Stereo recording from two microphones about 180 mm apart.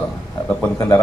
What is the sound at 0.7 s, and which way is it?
Speech, 20° left (ahead or behind).